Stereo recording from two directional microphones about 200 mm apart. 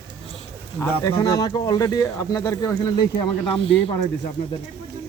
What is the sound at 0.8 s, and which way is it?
Speech, 15° left (ahead or behind).